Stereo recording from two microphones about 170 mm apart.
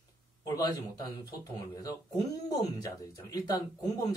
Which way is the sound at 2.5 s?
20° left (ahead or behind).